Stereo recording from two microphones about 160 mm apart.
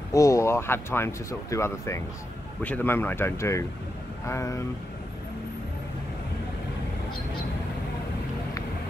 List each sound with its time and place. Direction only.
0.1 s speech: 20° left (ahead or behind)